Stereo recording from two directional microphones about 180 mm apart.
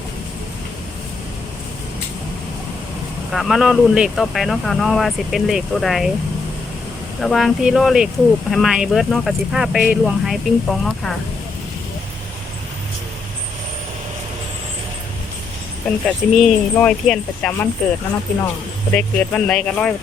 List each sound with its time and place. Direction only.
3.3 s speech: centre (ahead or behind)
7.2 s speech: centre (ahead or behind)
16.0 s speech: centre (ahead or behind)
18.9 s speech: 5° left (ahead or behind)